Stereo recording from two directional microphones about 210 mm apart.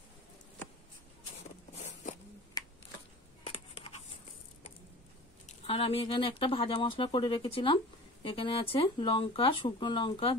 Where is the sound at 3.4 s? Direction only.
25° left (ahead or behind).